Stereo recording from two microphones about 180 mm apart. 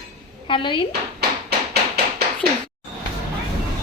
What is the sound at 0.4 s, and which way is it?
Speech, 30° left (ahead or behind).